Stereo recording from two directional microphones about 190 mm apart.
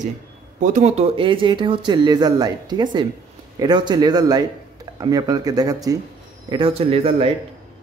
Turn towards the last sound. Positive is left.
turn(degrees=-30)  # may be behind; listen again after turning